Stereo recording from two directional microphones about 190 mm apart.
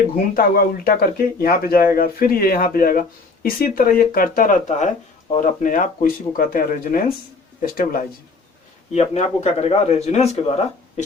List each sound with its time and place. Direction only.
0.3 s speech: 50° left (ahead or behind)
8.9 s a man's voice: 35° left (ahead or behind)